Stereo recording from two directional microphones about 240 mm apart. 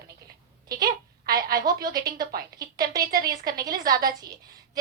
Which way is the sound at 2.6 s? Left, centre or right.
Centre.